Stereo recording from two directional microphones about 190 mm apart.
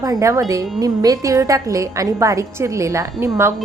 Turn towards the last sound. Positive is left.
turn(degrees=-15)  # may be behind; listen again after turning